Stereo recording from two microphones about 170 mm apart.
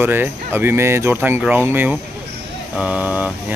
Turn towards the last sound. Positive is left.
turn(degrees=-10)  # may be behind; listen again after turning